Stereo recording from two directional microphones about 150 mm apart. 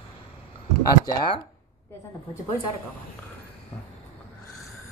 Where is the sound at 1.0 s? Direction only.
30° left (ahead or behind).